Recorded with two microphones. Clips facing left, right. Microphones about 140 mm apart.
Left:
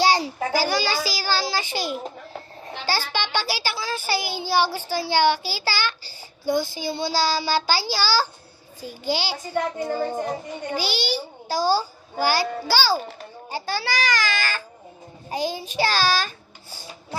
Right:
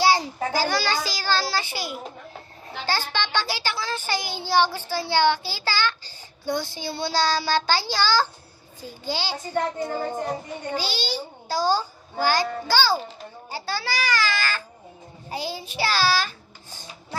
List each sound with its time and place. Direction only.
0.2 s a child's voice: 10° left (ahead or behind)
0.9 s child singing: 10° left (ahead or behind)
1.7 s a child's voice: 25° left (ahead or behind)
2.8 s child singing: 10° left (ahead or behind)